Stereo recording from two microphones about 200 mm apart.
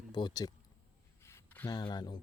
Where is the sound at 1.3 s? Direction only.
10° left (ahead or behind).